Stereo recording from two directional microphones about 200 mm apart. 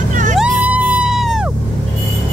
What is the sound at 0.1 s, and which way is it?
Music, 40° right (ahead or behind).